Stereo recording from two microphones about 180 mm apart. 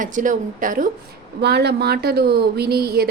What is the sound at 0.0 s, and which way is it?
Speech, 45° right (ahead or behind).